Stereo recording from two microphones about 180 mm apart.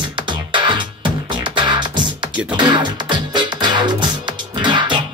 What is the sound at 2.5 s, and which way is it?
Music, 25° right (ahead or behind).